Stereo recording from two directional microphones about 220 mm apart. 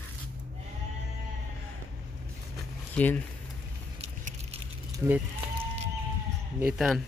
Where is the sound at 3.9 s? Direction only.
30° right (ahead or behind).